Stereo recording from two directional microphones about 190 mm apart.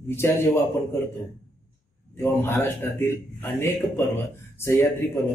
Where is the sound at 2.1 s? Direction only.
10° left (ahead or behind).